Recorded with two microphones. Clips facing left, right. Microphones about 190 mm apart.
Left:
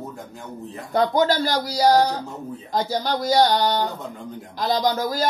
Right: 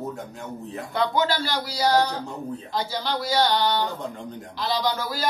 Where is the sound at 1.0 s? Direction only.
40° left (ahead or behind).